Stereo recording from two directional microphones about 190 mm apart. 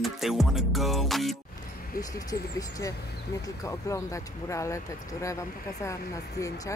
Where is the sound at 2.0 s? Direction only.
20° left (ahead or behind).